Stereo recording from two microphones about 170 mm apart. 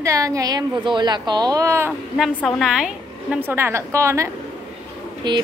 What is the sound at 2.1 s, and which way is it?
A woman's voice, centre (ahead or behind).